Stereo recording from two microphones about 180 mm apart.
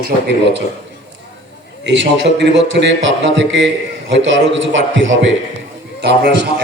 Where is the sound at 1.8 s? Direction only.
75° right (ahead or behind).